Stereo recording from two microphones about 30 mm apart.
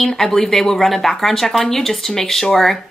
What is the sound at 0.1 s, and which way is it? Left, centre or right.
Speech, centre.